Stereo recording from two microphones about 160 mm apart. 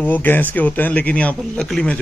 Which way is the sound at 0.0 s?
10° left (ahead or behind).